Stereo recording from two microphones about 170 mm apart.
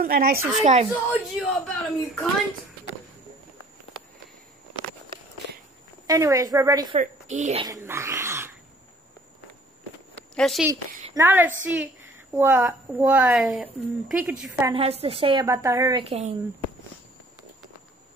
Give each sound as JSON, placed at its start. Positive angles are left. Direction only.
{"t": 0.0, "sound": "speech", "side_deg": -60}
{"t": 1.4, "sound": "speech", "side_deg": 5}
{"t": 6.0, "sound": "a woman's voice", "side_deg": -20}
{"t": 7.0, "sound": "speech", "side_deg": -45}
{"t": 7.6, "sound": "dog", "side_deg": -15}
{"t": 10.3, "sound": "a woman's voice", "side_deg": 0}
{"t": 11.1, "sound": "a woman's voice", "side_deg": -10}
{"t": 14.7, "sound": "a woman's voice", "side_deg": -35}
{"t": 15.4, "sound": "a woman's voice", "side_deg": -15}
{"t": 16.0, "sound": "a woman's voice", "side_deg": -40}